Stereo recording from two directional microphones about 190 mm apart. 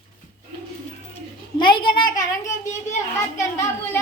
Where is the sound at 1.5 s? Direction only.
25° left (ahead or behind).